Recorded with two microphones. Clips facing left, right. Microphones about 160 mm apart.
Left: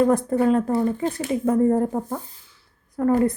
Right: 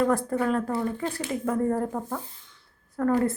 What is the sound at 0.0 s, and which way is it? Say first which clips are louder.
Speech: left 5 dB; 20° left (ahead or behind).